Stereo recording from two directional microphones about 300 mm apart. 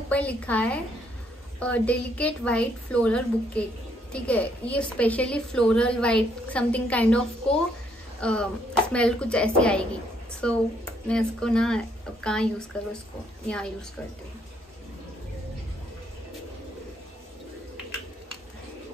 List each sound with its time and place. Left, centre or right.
0.1 s a woman's voice: centre
8.2 s throat clearing: centre
8.9 s a woman's voice: centre
11.1 s a woman's voice: centre